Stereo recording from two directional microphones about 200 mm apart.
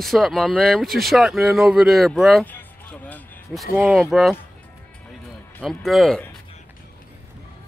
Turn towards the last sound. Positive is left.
turn(degrees=0)  # may be behind; listen again after turning